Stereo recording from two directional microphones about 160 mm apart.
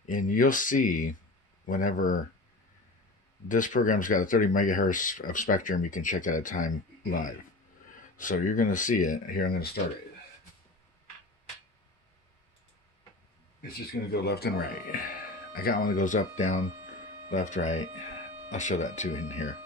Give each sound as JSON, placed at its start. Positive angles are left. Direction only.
{"t": 0.0, "sound": "speech", "side_deg": 55}
{"t": 3.4, "sound": "speech", "side_deg": 55}
{"t": 14.1, "sound": "speech", "side_deg": 90}